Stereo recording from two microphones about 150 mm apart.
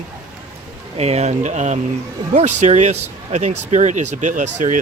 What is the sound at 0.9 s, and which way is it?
Speech, 45° right (ahead or behind).